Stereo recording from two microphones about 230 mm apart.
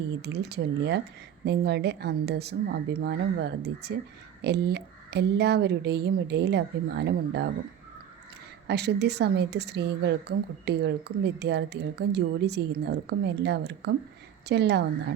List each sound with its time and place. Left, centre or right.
0.2 s a woman's voice: right
8.6 s a woman's voice: right